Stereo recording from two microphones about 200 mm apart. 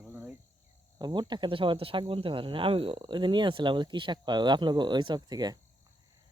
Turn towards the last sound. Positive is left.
turn(degrees=-20)  # may be behind; listen again after turning